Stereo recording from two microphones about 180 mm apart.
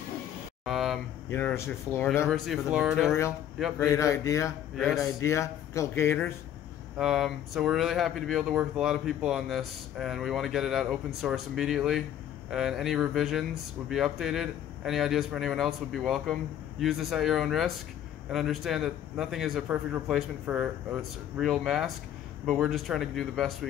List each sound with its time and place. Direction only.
0.7 s a sound: centre (ahead or behind)
1.3 s speech: 15° left (ahead or behind)
2.2 s speech: centre (ahead or behind)
3.8 s speech: 15° left (ahead or behind)
4.7 s speech: centre (ahead or behind)
5.2 s speech: 15° left (ahead or behind)
7.0 s speech: centre (ahead or behind)